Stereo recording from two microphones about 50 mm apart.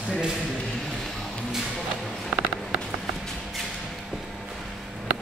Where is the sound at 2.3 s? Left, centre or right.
Right.